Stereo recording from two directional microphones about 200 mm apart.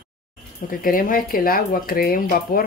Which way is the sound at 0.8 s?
45° left (ahead or behind).